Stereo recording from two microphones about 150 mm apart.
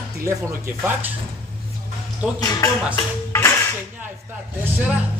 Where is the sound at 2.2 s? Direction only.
10° right (ahead or behind).